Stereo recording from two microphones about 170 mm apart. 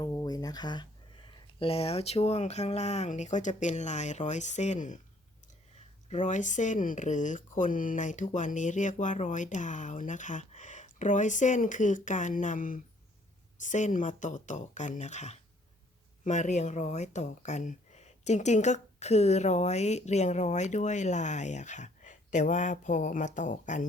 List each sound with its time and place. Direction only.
0.0 s a sound: 25° left (ahead or behind)
1.3 s speech: 30° left (ahead or behind)
6.1 s speech: 45° left (ahead or behind)